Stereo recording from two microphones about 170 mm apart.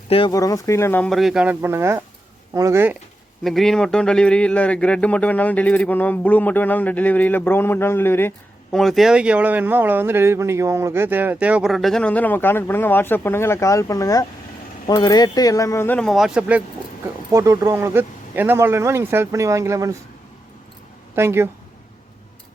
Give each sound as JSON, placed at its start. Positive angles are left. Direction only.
{"t": 0.1, "sound": "speech", "side_deg": 30}
{"t": 0.3, "sound": "speech", "side_deg": 20}
{"t": 3.4, "sound": "speech", "side_deg": 0}
{"t": 8.7, "sound": "speech", "side_deg": 0}
{"t": 17.3, "sound": "speech", "side_deg": -15}
{"t": 21.2, "sound": "speech", "side_deg": -15}